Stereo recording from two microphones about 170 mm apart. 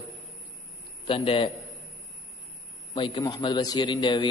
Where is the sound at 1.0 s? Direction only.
30° left (ahead or behind).